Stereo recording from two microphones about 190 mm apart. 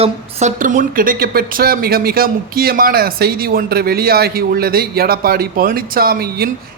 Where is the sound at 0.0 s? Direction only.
35° right (ahead or behind).